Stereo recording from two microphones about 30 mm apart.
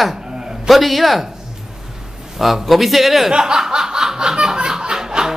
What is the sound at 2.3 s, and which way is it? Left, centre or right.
Speech, centre.